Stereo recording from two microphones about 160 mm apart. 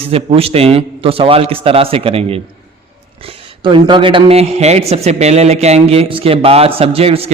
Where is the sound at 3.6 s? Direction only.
30° right (ahead or behind).